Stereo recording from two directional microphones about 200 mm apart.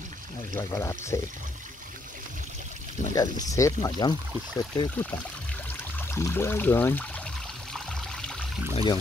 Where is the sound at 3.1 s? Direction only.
20° left (ahead or behind).